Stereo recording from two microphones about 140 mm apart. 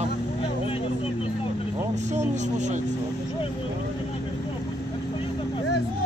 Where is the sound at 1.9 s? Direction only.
60° right (ahead or behind).